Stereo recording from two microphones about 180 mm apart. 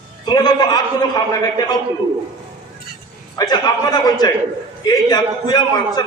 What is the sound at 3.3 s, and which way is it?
A man's voice, 20° left (ahead or behind).